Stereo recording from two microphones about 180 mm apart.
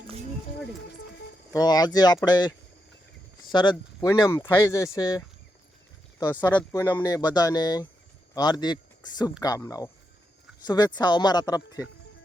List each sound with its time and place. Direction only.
1.5 s speech: 20° left (ahead or behind)
3.5 s speech: 25° left (ahead or behind)
6.4 s speech: 10° left (ahead or behind)